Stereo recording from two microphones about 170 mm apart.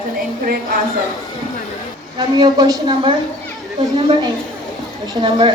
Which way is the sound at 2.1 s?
25° right (ahead or behind).